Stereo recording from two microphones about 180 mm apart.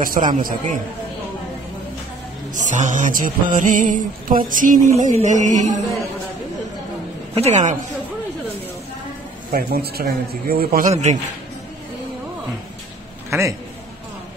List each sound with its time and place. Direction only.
0.0 s mantra: 50° right (ahead or behind)
2.7 s mantra: 45° right (ahead or behind)
5.2 s music: 45° right (ahead or behind)
7.3 s music: 40° right (ahead or behind)
9.5 s a man's voice: 55° right (ahead or behind)
10.9 s music: 40° right (ahead or behind)